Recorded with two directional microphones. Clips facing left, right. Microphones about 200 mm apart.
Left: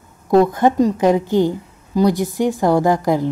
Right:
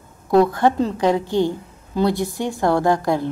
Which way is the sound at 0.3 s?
20° left (ahead or behind).